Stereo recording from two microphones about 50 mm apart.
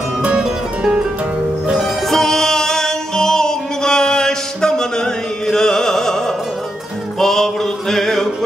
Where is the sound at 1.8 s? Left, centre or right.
Centre.